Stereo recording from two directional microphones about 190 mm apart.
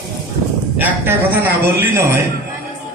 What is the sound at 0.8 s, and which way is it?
A man's voice, 10° right (ahead or behind).